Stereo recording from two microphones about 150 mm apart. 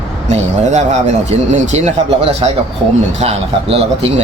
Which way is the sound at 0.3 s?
50° right (ahead or behind).